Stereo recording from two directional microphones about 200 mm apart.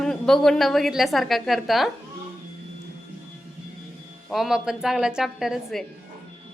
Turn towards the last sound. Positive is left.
turn(degrees=0)  # may be behind; listen again after turning